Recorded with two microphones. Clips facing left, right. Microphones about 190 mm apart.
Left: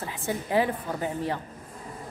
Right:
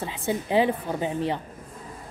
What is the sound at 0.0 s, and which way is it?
A woman's voice, 20° right (ahead or behind).